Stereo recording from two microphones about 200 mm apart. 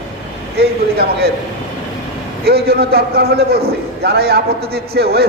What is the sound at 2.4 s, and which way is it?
A man's voice, 50° right (ahead or behind).